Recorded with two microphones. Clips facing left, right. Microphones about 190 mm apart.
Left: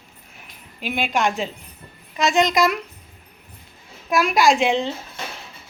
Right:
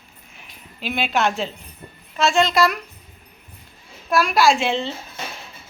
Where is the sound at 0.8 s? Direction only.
10° left (ahead or behind).